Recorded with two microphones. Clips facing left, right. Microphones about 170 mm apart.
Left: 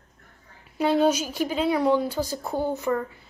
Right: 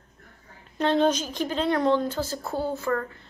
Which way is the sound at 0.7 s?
10° left (ahead or behind).